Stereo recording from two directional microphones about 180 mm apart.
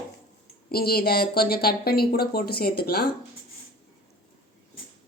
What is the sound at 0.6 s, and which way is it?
Speech, 60° left (ahead or behind).